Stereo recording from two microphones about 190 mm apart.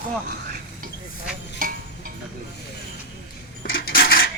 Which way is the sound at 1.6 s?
50° right (ahead or behind).